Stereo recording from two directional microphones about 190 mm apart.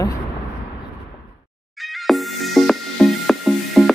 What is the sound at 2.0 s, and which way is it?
Music, centre (ahead or behind).